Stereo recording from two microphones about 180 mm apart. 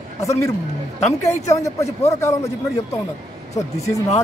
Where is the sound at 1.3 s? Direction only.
15° left (ahead or behind).